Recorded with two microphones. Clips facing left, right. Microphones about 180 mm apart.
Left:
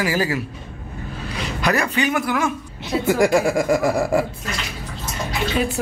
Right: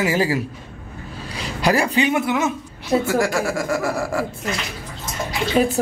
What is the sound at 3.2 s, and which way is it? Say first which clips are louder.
Speech: left 4 dB; 15° left (ahead or behind).